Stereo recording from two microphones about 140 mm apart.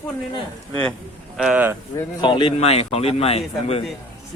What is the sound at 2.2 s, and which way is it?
A man's voice, 35° left (ahead or behind).